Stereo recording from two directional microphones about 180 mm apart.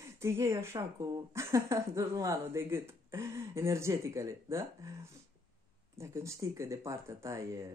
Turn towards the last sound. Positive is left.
turn(degrees=-15)  # may be behind; listen again after turning